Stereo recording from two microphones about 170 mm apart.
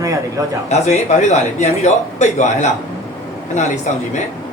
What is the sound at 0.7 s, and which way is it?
A man's voice, 40° left (ahead or behind).